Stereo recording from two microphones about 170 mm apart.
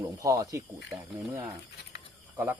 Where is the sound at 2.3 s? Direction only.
10° right (ahead or behind).